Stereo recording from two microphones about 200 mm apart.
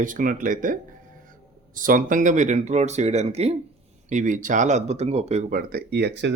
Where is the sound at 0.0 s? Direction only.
40° right (ahead or behind).